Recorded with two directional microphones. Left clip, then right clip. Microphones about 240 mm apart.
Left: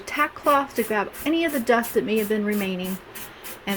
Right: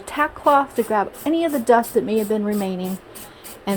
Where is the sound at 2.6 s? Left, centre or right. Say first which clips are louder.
Right 2 dB; right.